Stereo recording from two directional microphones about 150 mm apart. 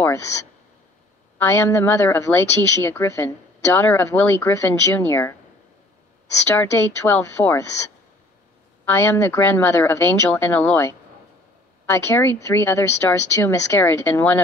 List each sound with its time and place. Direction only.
1.4 s a woman's voice: 15° left (ahead or behind)
6.5 s a woman's voice: 15° left (ahead or behind)
8.8 s a woman's voice: 15° left (ahead or behind)